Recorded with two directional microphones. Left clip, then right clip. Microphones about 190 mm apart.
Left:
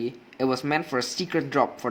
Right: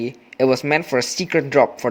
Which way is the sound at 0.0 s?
40° right (ahead or behind).